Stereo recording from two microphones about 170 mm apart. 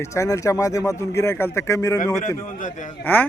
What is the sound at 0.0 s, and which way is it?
Speech, 15° left (ahead or behind).